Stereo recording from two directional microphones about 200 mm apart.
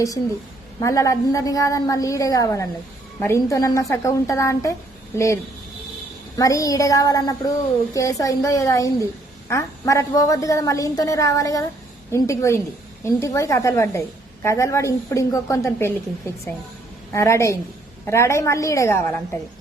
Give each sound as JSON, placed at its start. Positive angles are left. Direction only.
{"t": 0.8, "sound": "a woman's voice", "side_deg": 15}